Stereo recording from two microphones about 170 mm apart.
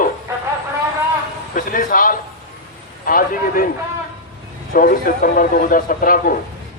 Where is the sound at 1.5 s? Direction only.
55° left (ahead or behind).